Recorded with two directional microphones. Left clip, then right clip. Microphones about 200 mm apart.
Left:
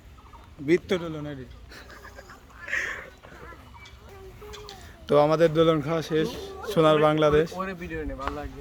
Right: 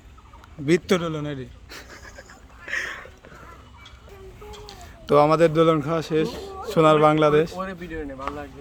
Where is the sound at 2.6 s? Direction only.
10° right (ahead or behind).